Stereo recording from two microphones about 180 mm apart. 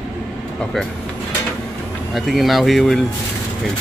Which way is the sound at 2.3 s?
Centre (ahead or behind).